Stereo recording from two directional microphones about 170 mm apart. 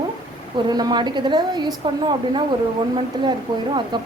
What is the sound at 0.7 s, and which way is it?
A woman's voice, 25° right (ahead or behind).